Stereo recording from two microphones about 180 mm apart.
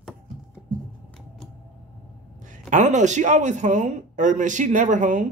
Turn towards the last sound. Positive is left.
turn(degrees=-45)  # may be behind; listen again after turning